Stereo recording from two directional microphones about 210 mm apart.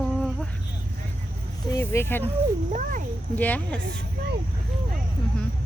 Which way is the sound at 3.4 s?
5° left (ahead or behind).